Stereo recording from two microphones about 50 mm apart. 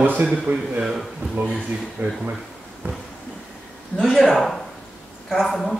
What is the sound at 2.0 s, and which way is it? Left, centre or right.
Speech, right.